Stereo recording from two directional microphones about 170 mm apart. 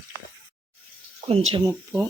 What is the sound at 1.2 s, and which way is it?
Speech, 35° right (ahead or behind).